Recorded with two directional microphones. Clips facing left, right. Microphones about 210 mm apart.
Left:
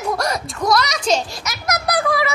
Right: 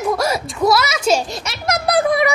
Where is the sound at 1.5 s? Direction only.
30° right (ahead or behind).